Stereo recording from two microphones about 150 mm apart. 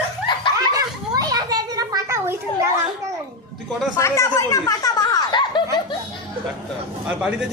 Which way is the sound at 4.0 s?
20° left (ahead or behind).